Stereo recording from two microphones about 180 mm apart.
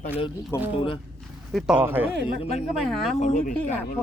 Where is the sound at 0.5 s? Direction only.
15° left (ahead or behind).